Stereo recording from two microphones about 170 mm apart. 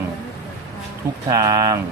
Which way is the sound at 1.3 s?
20° right (ahead or behind).